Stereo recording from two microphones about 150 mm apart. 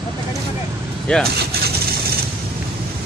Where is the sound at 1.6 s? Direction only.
90° right.